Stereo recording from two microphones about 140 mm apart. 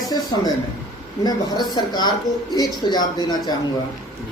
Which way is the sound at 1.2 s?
30° left (ahead or behind).